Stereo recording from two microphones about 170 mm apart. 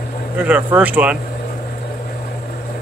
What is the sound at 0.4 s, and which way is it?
Speech, 10° right (ahead or behind).